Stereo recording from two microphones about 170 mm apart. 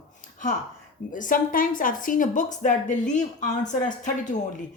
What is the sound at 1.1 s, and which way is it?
Speech, 55° left (ahead or behind).